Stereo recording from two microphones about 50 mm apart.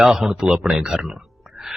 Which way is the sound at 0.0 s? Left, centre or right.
Centre.